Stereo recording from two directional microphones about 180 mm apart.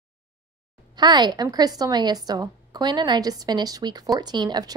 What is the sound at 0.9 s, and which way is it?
A woman's voice, 25° right (ahead or behind).